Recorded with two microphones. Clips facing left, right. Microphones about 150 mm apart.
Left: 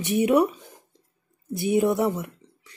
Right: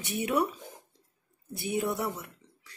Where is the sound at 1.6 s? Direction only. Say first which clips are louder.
Left 9 dB; 20° left (ahead or behind).